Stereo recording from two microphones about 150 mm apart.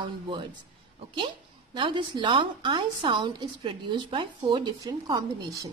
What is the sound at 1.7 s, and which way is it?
A woman's voice, 35° right (ahead or behind).